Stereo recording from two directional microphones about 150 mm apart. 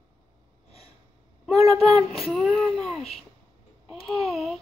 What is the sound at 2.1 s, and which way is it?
Speech, centre (ahead or behind).